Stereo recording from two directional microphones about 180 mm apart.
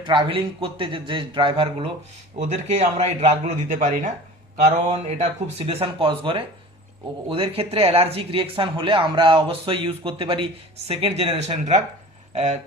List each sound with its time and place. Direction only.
0.0 s a man's voice: 25° right (ahead or behind)
2.4 s speech: 40° right (ahead or behind)